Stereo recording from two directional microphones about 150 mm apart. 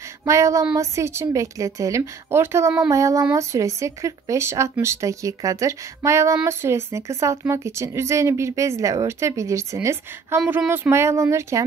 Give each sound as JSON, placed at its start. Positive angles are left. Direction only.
{"t": 0.2, "sound": "speech", "side_deg": -20}